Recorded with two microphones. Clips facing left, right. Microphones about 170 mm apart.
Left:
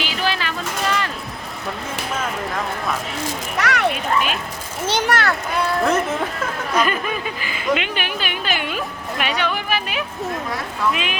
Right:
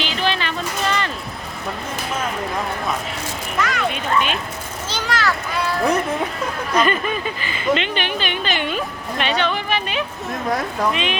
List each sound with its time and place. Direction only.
0.0 s music: 5° left (ahead or behind)
3.6 s a child's voice: 70° left (ahead or behind)
3.9 s speech: 5° left (ahead or behind)
4.9 s a child's voice: 60° left (ahead or behind)
6.7 s speech: 5° left (ahead or behind)